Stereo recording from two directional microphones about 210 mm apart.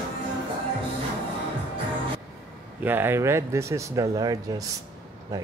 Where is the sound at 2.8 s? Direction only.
10° right (ahead or behind).